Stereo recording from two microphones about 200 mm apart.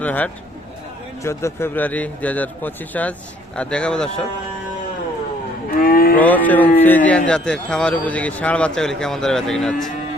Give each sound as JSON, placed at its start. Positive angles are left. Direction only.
{"t": 0.0, "sound": "a man's voice", "side_deg": 10}
{"t": 5.8, "sound": "cattle", "side_deg": 45}
{"t": 6.1, "sound": "a man's voice", "side_deg": 10}